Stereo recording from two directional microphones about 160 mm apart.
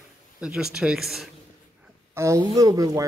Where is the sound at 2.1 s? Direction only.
15° right (ahead or behind).